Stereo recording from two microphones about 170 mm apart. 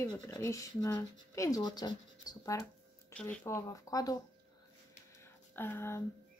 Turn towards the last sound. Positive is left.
turn(degrees=15)  # may be behind; listen again after turning